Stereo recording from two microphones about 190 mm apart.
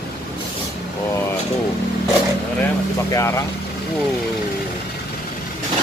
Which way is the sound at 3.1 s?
15° left (ahead or behind).